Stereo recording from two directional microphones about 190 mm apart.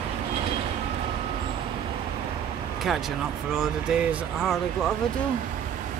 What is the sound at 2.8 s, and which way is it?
Speech, centre (ahead or behind).